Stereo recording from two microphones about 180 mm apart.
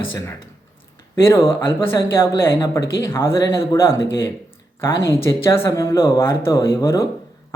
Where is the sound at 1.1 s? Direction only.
15° left (ahead or behind).